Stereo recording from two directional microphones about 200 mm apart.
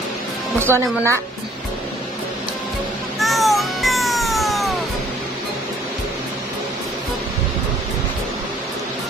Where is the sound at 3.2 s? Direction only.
Centre (ahead or behind).